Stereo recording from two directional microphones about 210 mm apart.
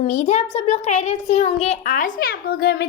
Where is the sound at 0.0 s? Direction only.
35° left (ahead or behind).